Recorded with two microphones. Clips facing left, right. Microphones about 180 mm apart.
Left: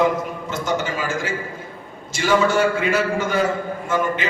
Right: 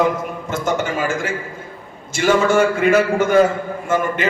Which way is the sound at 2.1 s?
50° right (ahead or behind).